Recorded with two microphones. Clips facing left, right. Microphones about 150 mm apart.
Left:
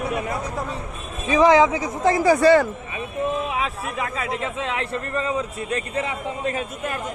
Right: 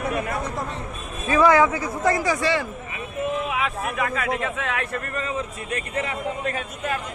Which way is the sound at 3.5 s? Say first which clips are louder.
Even; 35° left (ahead or behind).